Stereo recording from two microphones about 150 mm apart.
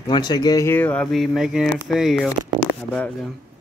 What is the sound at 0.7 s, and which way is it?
Speech, 10° left (ahead or behind).